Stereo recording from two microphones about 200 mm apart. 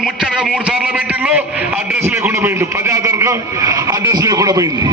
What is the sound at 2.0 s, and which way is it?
A man's voice, 10° right (ahead or behind).